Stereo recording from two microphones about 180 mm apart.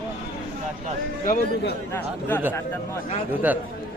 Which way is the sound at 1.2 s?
50° left (ahead or behind).